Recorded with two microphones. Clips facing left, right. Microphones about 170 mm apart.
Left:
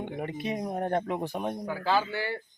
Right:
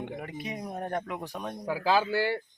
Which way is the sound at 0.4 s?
25° left (ahead or behind).